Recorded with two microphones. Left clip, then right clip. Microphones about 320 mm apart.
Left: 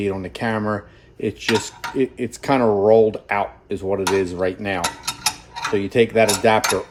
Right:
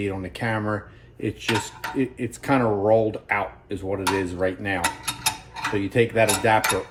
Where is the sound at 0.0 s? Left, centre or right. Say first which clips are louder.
Left 4 dB; centre.